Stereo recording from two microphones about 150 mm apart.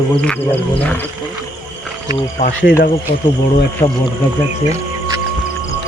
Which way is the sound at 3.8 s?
30° left (ahead or behind).